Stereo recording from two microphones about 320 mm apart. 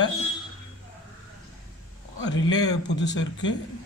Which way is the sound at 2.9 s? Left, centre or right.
Left.